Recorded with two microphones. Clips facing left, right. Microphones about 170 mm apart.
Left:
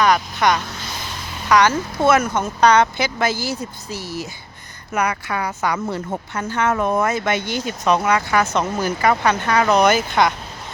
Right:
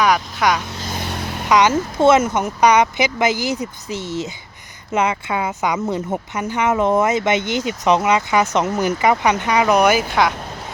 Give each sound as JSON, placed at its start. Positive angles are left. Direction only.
{"t": 0.0, "sound": "speech", "side_deg": -10}
{"t": 0.9, "sound": "vehicle", "side_deg": -60}
{"t": 1.5, "sound": "speech", "side_deg": -20}